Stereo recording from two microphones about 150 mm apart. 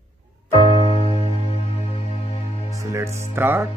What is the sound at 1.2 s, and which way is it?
Music, 40° left (ahead or behind).